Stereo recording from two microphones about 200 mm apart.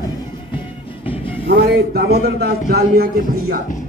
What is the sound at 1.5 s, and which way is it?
A man's voice, 55° right (ahead or behind).